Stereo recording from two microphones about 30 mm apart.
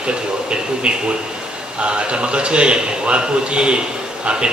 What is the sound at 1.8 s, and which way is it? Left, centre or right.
A man's voice, right.